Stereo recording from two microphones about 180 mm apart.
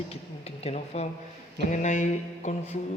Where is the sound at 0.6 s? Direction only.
35° left (ahead or behind).